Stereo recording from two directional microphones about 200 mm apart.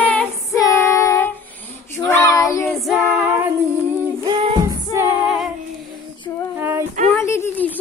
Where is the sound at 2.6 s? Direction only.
Centre (ahead or behind).